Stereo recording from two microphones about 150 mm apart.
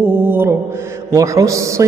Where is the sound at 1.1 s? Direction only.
20° right (ahead or behind).